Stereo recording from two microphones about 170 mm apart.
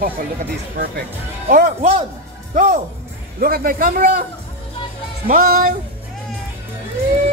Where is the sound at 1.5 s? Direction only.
55° right (ahead or behind).